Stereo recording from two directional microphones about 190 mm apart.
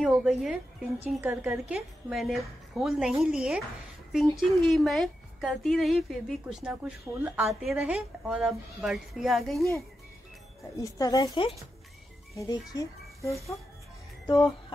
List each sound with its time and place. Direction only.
0.0 s a woman's voice: centre (ahead or behind)
10.8 s a child's voice: 20° left (ahead or behind)